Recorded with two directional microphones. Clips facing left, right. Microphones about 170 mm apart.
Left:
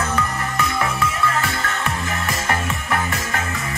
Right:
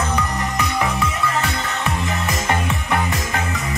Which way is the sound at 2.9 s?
20° right (ahead or behind).